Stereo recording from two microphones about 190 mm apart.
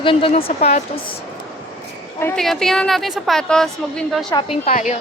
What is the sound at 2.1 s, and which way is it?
Speech, 10° left (ahead or behind).